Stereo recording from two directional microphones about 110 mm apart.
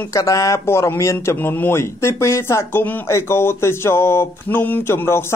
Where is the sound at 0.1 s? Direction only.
30° left (ahead or behind).